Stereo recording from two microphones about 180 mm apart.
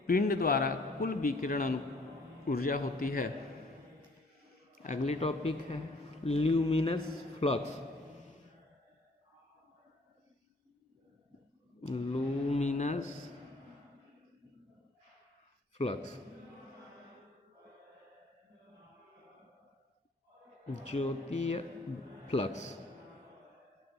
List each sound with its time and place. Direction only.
0.1 s a man's voice: 55° left (ahead or behind)
4.7 s a man's voice: 45° left (ahead or behind)
11.8 s speech: 35° left (ahead or behind)
15.8 s a man's voice: 35° left (ahead or behind)
20.7 s a man's voice: 40° left (ahead or behind)